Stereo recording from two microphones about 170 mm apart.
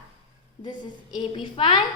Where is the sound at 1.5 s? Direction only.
30° left (ahead or behind).